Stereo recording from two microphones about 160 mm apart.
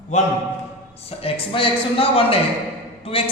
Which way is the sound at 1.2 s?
35° left (ahead or behind).